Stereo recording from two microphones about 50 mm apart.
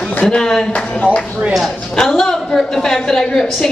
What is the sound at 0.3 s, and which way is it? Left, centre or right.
Speech, centre.